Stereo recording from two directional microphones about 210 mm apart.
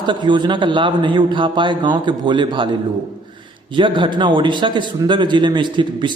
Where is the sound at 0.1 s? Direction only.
20° right (ahead or behind).